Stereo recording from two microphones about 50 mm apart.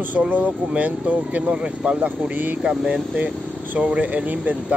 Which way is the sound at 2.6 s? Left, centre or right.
Right.